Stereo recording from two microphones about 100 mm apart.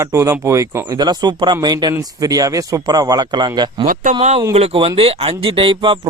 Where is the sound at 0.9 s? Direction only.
45° right (ahead or behind).